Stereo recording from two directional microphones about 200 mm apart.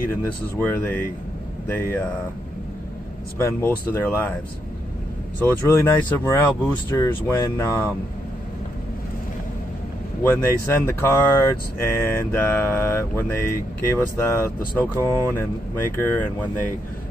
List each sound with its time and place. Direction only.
0.1 s speech: 10° left (ahead or behind)
3.3 s speech: 15° left (ahead or behind)
5.4 s speech: 10° left (ahead or behind)
10.2 s speech: 10° left (ahead or behind)
15.0 s speech: 15° right (ahead or behind)
15.3 s speech: 10° left (ahead or behind)